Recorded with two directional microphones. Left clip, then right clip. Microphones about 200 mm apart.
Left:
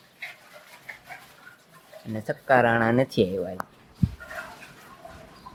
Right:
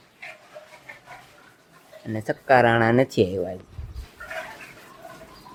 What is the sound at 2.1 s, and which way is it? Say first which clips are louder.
Speech: right 3 dB; centre (ahead or behind).